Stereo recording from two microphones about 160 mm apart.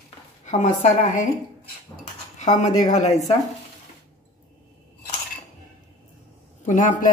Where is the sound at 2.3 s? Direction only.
50° left (ahead or behind).